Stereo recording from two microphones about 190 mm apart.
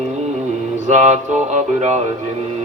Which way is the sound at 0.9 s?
40° right (ahead or behind).